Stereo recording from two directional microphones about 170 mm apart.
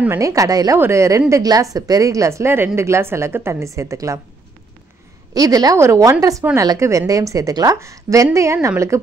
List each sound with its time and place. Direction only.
0.0 s a woman's voice: 15° right (ahead or behind)
5.3 s a woman's voice: 20° right (ahead or behind)